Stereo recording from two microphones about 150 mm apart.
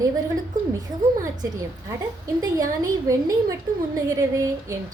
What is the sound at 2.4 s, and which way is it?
A woman's voice, 25° right (ahead or behind).